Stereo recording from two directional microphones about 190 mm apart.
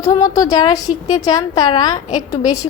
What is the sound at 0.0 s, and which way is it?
A woman's voice, 20° left (ahead or behind).